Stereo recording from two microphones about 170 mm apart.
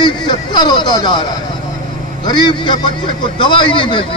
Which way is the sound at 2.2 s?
30° left (ahead or behind).